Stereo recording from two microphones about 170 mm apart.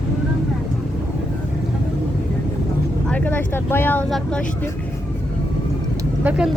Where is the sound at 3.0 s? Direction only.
10° left (ahead or behind).